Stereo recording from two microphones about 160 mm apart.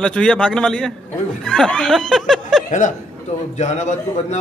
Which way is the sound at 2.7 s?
50° left (ahead or behind).